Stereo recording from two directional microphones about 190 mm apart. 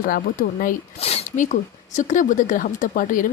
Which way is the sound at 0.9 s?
30° left (ahead or behind).